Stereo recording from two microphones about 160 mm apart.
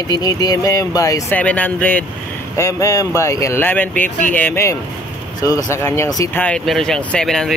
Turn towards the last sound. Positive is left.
turn(degrees=5)  # may be behind; listen again after turning